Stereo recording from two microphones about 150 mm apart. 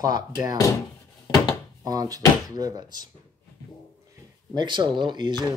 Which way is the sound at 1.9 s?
25° right (ahead or behind).